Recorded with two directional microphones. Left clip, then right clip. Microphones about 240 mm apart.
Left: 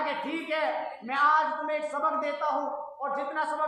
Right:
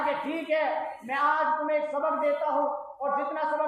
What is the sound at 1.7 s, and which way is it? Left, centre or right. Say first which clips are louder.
Speech: right 2 dB; left.